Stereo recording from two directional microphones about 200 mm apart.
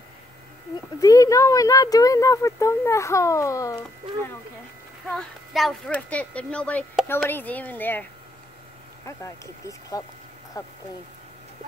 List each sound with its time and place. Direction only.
1.0 s speech: 15° left (ahead or behind)
5.1 s speech: centre (ahead or behind)
9.0 s speech: 15° left (ahead or behind)